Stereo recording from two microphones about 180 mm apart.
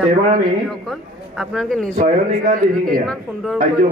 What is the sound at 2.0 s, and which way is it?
Speech, 45° right (ahead or behind).